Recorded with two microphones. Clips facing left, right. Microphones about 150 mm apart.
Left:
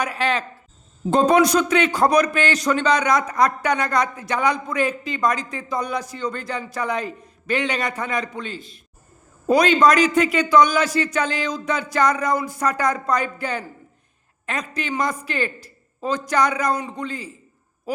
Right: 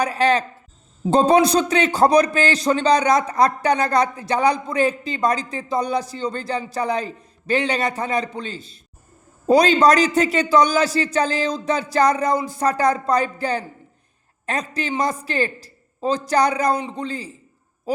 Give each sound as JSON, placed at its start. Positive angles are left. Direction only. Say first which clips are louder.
{"t": 0.0, "sound": "a man's voice", "louder": "right 4 dB", "side_deg": -35}
{"t": 17.9, "sound": "owl", "louder": "right 3 dB", "side_deg": -35}